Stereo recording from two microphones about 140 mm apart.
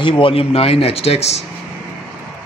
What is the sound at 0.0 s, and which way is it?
Speech, 40° left (ahead or behind).